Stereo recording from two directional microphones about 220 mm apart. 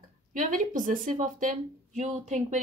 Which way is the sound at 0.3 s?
35° right (ahead or behind).